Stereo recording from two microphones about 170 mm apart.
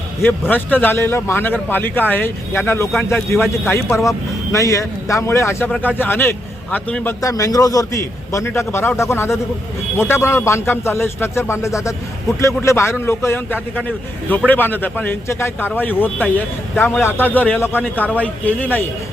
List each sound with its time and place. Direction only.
0.2 s a man's voice: 10° left (ahead or behind)